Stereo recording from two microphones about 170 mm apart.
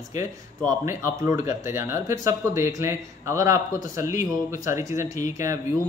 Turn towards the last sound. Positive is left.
turn(degrees=-15)  # may be behind; listen again after turning